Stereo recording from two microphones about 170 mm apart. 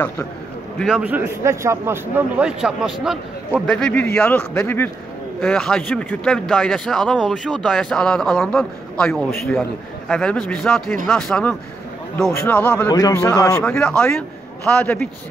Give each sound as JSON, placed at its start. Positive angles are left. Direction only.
{"t": 0.7, "sound": "a man's voice", "side_deg": -5}
{"t": 13.7, "sound": "a man's voice", "side_deg": 5}